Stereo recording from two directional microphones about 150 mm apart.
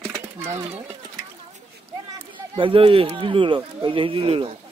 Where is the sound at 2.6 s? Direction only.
35° right (ahead or behind).